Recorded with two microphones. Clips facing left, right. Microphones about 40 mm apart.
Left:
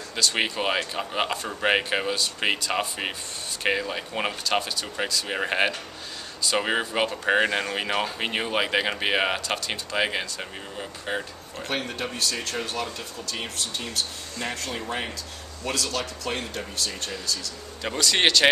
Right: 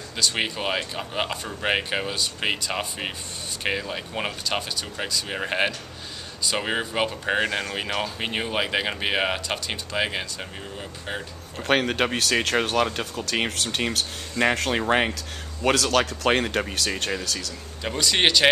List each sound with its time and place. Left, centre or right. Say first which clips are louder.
0.1 s speech: left 1 dB; centre
11.6 s speech: right 8 dB; right
14.4 s speech: right 9 dB; right
17.8 s speech: even; centre